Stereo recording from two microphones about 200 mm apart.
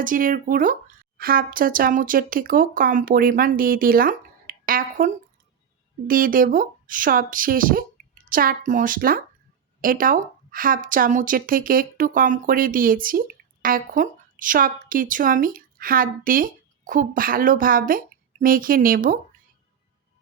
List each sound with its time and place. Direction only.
0.0 s a woman's voice: 45° right (ahead or behind)